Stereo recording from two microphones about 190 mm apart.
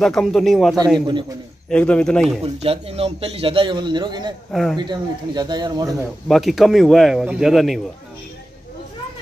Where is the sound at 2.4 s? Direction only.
30° right (ahead or behind).